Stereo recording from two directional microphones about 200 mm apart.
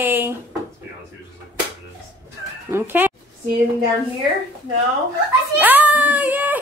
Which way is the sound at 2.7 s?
10° right (ahead or behind).